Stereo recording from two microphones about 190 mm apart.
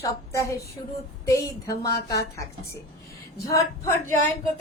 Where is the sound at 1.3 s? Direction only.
15° left (ahead or behind).